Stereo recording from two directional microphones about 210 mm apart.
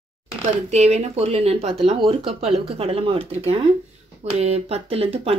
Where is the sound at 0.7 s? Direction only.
30° right (ahead or behind).